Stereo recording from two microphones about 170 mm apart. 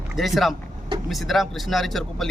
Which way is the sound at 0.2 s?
Centre (ahead or behind).